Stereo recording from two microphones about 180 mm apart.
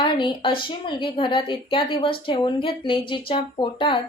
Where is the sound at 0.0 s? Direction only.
25° left (ahead or behind).